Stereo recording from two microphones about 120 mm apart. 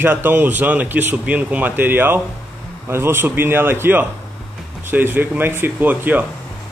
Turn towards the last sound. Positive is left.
turn(degrees=-15)  # may be behind; listen again after turning